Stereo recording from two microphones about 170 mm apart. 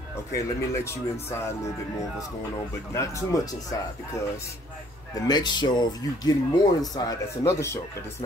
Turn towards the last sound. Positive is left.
turn(degrees=15)  # may be behind; listen again after turning